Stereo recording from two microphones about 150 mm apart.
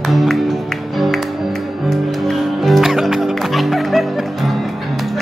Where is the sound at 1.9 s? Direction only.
Centre (ahead or behind).